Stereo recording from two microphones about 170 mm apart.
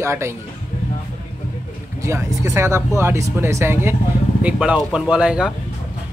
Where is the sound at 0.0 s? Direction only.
15° right (ahead or behind).